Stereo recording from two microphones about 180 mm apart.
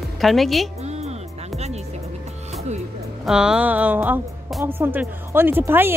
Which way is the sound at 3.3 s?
5° right (ahead or behind).